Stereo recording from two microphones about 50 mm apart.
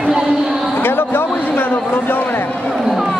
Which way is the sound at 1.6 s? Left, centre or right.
Left.